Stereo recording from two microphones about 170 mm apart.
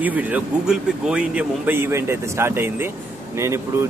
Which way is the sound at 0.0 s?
10° right (ahead or behind).